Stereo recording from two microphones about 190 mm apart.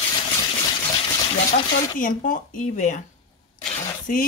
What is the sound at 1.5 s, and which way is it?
Speech, 45° left (ahead or behind).